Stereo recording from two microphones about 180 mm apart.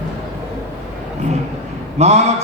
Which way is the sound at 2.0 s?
35° right (ahead or behind).